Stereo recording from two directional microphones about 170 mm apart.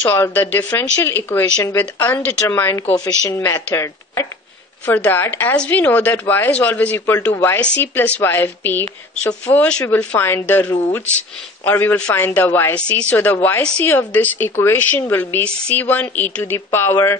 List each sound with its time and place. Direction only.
0.1 s speech: 10° left (ahead or behind)